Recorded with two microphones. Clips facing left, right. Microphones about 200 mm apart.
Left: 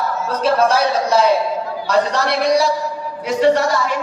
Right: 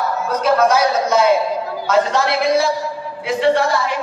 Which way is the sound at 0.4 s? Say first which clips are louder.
Right 1 dB; 30° left (ahead or behind).